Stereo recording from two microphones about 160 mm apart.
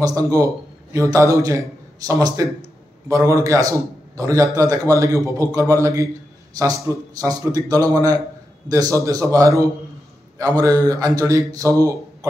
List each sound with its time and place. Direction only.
0.0 s a man's voice: 20° right (ahead or behind)